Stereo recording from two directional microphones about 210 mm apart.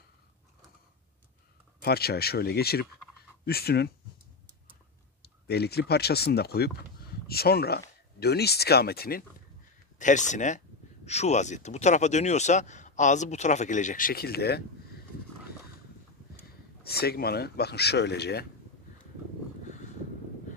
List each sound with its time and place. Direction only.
1.8 s speech: 50° left (ahead or behind)
5.2 s speech: 50° left (ahead or behind)
9.9 s speech: 35° left (ahead or behind)
16.8 s speech: 50° left (ahead or behind)